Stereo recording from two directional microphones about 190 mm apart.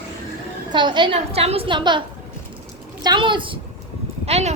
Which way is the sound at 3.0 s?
25° right (ahead or behind).